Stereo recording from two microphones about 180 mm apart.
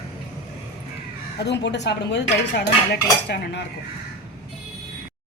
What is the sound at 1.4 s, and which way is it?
Speech, 75° left (ahead or behind).